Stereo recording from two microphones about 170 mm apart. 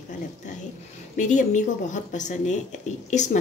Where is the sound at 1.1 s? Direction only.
45° left (ahead or behind).